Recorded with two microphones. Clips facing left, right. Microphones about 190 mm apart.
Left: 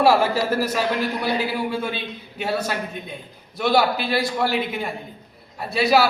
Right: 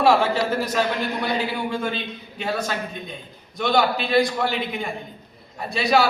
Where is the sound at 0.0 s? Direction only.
5° left (ahead or behind).